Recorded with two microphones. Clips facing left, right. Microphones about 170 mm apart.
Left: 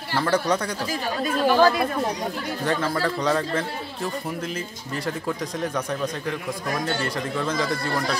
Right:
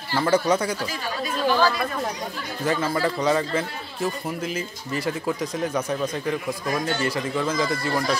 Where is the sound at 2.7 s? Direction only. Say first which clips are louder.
Right 2 dB; 5° right (ahead or behind).